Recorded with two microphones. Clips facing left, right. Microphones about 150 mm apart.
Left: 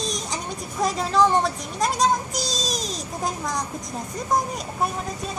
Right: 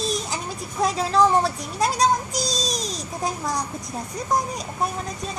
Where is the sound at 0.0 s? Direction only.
5° right (ahead or behind).